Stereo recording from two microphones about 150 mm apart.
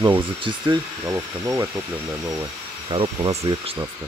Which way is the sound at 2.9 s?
35° right (ahead or behind).